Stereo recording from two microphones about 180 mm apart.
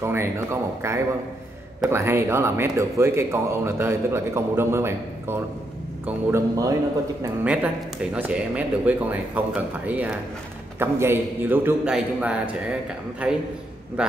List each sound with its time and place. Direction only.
0.0 s speech: 15° right (ahead or behind)
7.4 s a man's voice: 5° right (ahead or behind)